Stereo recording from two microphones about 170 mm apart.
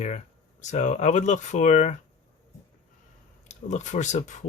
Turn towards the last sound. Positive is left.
turn(degrees=45)  # may be behind; listen again after turning